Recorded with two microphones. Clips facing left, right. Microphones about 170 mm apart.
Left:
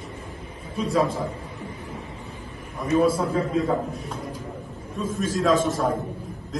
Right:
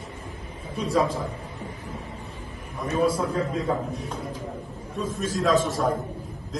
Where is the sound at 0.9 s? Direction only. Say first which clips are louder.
Left 1 dB; centre (ahead or behind).